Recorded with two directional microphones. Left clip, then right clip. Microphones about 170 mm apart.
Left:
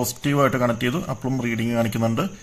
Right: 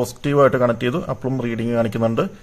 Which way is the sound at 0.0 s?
30° right (ahead or behind).